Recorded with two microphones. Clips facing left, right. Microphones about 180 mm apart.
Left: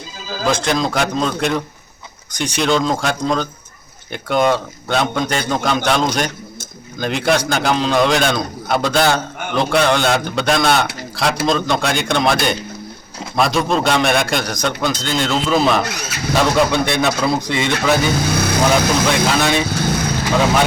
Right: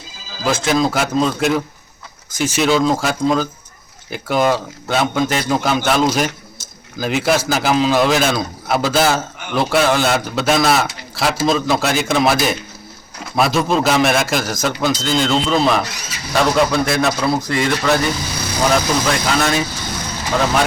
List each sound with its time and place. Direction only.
0.4 s a man's voice: centre (ahead or behind)
18.2 s vehicle: 60° left (ahead or behind)
18.7 s a man's voice: centre (ahead or behind)
19.7 s vehicle: 60° left (ahead or behind)